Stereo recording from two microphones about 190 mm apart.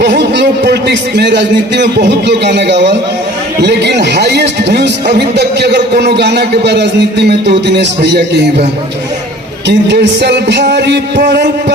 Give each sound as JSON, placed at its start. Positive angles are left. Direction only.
{"t": 0.0, "sound": "a man's voice", "side_deg": -65}
{"t": 9.6, "sound": "a man's voice", "side_deg": -65}